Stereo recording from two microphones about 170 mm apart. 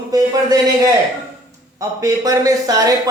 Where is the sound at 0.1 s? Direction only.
20° right (ahead or behind).